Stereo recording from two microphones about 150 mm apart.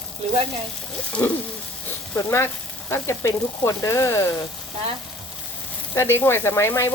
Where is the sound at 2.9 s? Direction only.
20° left (ahead or behind).